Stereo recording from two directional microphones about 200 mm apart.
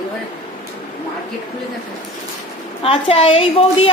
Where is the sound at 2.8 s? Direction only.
30° left (ahead or behind).